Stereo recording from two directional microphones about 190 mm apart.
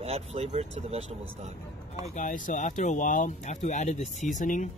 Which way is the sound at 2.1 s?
40° left (ahead or behind).